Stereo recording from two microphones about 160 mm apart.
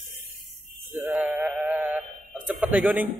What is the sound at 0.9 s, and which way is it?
Sheep, 10° right (ahead or behind).